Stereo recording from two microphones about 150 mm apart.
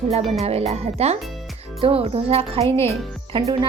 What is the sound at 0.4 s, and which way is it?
A child's voice, 45° right (ahead or behind).